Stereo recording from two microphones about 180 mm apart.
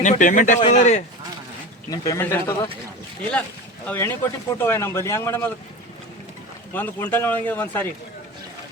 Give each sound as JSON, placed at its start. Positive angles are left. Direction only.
{"t": 0.0, "sound": "speech", "side_deg": 45}
{"t": 1.9, "sound": "speech", "side_deg": 15}
{"t": 3.8, "sound": "speech", "side_deg": 10}
{"t": 6.7, "sound": "speech", "side_deg": 10}